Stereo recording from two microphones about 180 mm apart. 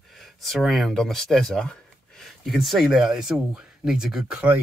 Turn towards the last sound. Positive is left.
turn(degrees=-5)  # may be behind; listen again after turning